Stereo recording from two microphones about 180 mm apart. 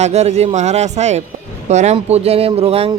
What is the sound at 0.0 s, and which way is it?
Speech, 40° right (ahead or behind).